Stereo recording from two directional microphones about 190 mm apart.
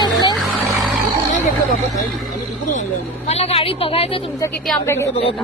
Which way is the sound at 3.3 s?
35° left (ahead or behind).